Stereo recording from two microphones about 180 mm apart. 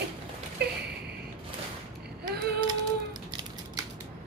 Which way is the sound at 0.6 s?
65° right (ahead or behind).